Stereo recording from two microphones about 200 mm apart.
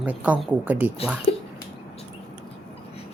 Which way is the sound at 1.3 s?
25° left (ahead or behind).